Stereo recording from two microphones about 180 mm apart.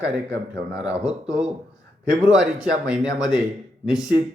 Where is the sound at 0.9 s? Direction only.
5° right (ahead or behind).